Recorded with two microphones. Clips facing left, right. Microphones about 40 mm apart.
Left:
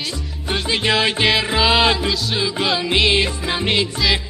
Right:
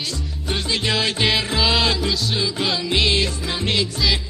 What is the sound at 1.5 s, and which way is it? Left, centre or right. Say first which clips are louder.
Music: left 4 dB; left.